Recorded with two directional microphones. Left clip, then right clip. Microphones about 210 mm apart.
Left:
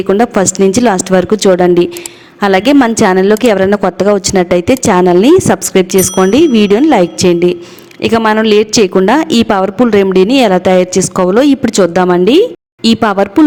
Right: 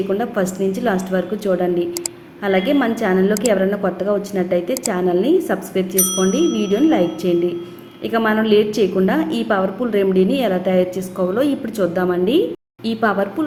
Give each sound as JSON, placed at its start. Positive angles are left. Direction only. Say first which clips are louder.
{"t": 0.1, "sound": "a woman's voice", "louder": "left 10 dB", "side_deg": 45}